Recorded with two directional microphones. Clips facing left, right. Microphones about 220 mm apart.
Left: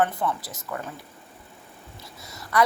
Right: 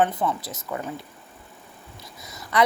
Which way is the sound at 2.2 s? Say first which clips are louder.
Even; 20° right (ahead or behind).